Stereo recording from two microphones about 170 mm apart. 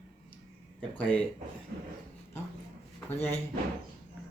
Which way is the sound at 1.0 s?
5° left (ahead or behind).